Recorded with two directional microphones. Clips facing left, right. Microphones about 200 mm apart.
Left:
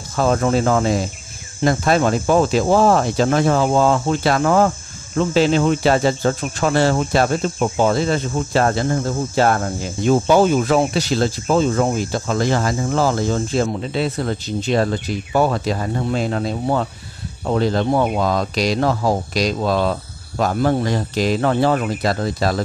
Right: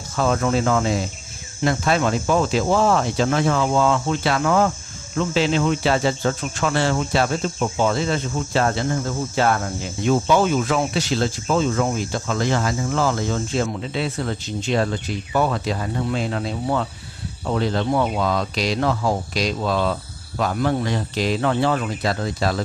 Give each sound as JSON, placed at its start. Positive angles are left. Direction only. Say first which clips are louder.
{"t": 0.1, "sound": "cricket", "louder": "left 3 dB", "side_deg": 30}
{"t": 1.6, "sound": "cricket", "louder": "left 4 dB", "side_deg": 40}
{"t": 2.6, "sound": "speech", "louder": "left 4 dB", "side_deg": 35}
{"t": 7.0, "sound": "speech", "louder": "left 3 dB", "side_deg": 50}
{"t": 7.9, "sound": "speech", "louder": "left 4 dB", "side_deg": 35}